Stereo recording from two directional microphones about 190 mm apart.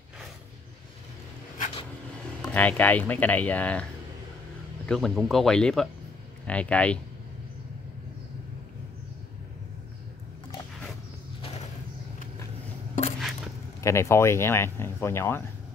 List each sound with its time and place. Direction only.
2.4 s speech: 10° left (ahead or behind)
4.8 s speech: centre (ahead or behind)
11.4 s a sound: 35° left (ahead or behind)
13.7 s speech: 15° left (ahead or behind)